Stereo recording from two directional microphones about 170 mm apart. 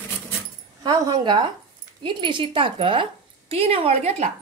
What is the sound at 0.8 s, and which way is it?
A woman's voice, 25° right (ahead or behind).